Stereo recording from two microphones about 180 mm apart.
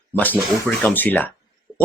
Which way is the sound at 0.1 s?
10° left (ahead or behind).